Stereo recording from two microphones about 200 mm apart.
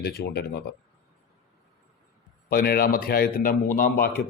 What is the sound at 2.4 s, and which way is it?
Speech, 50° left (ahead or behind).